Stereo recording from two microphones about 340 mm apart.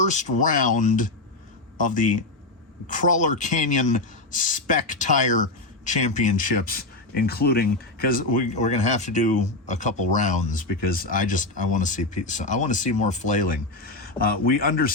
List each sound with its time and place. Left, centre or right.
0.0 s speech: left